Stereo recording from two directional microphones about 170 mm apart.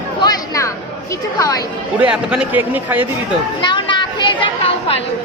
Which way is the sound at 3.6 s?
25° left (ahead or behind).